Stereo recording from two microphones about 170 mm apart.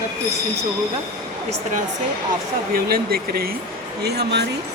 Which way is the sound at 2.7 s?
60° right (ahead or behind).